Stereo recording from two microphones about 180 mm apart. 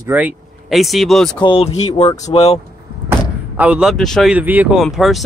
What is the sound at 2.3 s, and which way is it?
Speech, 35° left (ahead or behind).